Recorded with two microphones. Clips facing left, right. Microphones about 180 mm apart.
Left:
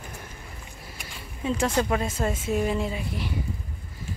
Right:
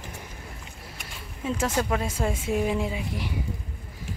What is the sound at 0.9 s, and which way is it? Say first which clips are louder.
A woman's voice: even; 5° right (ahead or behind).